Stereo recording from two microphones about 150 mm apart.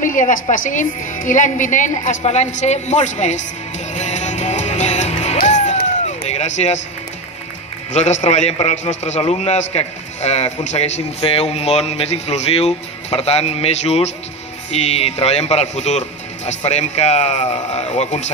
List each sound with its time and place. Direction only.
0.0 s a woman's voice: 60° left (ahead or behind)
3.9 s music: 50° left (ahead or behind)
6.0 s a sound: 50° left (ahead or behind)
7.9 s a man's voice: 50° left (ahead or behind)